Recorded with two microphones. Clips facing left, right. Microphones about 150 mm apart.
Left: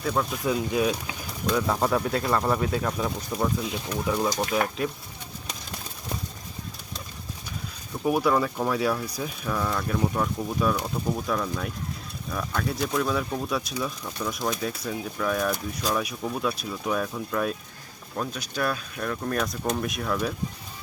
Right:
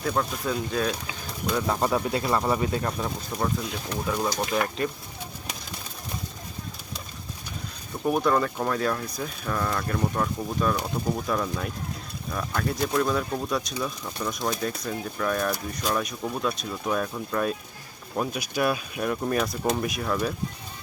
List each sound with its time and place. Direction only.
0.0 s speech: centre (ahead or behind)
0.4 s speech: 10° left (ahead or behind)
1.5 s speech: 5° right (ahead or behind)
4.1 s speech: 15° left (ahead or behind)
4.5 s speech: 5° left (ahead or behind)
8.0 s speech: 5° left (ahead or behind)
18.2 s speech: 10° right (ahead or behind)